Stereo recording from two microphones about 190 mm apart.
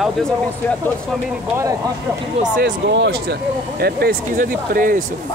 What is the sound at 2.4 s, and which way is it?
Speech, 50° right (ahead or behind).